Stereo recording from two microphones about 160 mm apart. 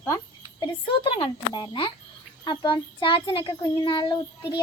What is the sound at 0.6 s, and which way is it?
A child's voice, 30° left (ahead or behind).